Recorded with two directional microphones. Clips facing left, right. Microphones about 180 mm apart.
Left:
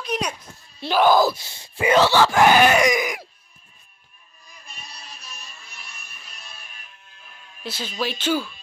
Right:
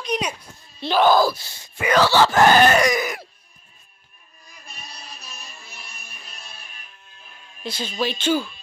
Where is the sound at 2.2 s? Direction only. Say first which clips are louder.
Right 1 dB; 10° left (ahead or behind).